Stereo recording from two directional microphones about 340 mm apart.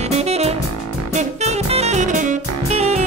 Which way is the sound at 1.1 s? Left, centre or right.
Centre.